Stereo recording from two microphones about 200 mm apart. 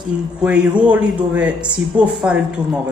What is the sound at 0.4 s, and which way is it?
A man's voice, 5° right (ahead or behind).